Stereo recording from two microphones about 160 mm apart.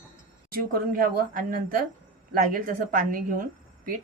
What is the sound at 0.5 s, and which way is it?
A woman's voice, 65° right (ahead or behind).